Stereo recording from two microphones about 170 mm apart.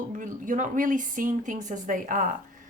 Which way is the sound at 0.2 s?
50° right (ahead or behind).